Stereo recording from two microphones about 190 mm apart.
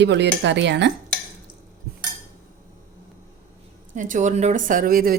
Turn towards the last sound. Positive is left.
turn(degrees=-50)  # may be behind; listen again after turning